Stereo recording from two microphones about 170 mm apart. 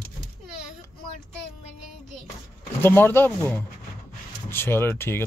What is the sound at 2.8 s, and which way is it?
Speech, 10° left (ahead or behind).